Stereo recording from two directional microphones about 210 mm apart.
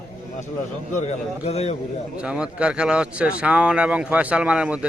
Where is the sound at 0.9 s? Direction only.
35° left (ahead or behind).